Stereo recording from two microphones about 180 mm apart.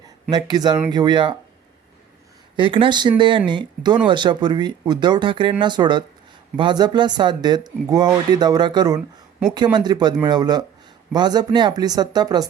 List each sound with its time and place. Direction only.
0.3 s speech: 20° right (ahead or behind)
2.6 s speech: 30° right (ahead or behind)